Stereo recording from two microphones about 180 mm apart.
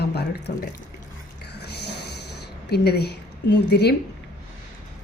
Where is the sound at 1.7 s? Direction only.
65° left (ahead or behind).